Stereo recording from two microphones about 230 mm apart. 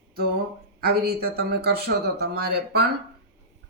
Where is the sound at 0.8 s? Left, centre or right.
Right.